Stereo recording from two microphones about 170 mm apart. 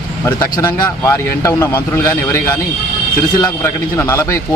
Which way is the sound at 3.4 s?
15° left (ahead or behind).